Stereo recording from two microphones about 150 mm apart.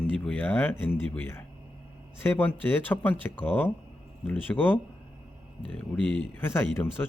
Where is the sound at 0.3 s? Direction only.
10° left (ahead or behind).